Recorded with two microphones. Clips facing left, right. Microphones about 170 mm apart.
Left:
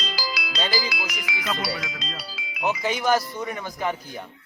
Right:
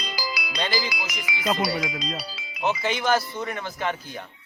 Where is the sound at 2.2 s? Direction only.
Centre (ahead or behind).